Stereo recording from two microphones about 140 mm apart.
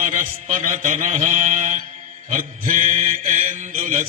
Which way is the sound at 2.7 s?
65° right (ahead or behind).